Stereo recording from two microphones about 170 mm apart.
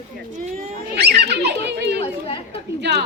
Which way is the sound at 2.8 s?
80° right.